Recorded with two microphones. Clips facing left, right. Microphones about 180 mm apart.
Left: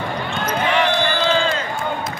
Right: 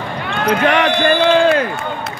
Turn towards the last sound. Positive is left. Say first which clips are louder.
# right 7 dB
turn(degrees=-65)  # may be behind; listen again after turning